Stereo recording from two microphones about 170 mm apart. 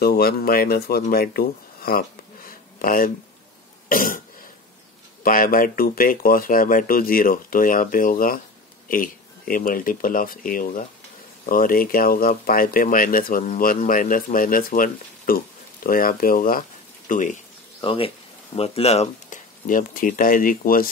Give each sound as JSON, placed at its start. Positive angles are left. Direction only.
{"t": 0.0, "sound": "speech", "side_deg": 65}
{"t": 1.1, "sound": "a sound", "side_deg": 65}
{"t": 3.9, "sound": "speech", "side_deg": 55}
{"t": 5.2, "sound": "speech", "side_deg": 55}
{"t": 17.7, "sound": "speech", "side_deg": 30}
{"t": 19.6, "sound": "speech", "side_deg": 50}